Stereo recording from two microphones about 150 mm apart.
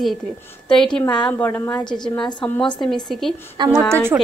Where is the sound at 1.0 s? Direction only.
30° left (ahead or behind).